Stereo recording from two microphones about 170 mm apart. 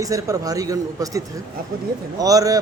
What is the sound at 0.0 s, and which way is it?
A man's voice, 20° right (ahead or behind).